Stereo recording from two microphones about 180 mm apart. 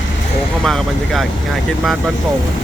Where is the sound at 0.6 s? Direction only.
Centre (ahead or behind).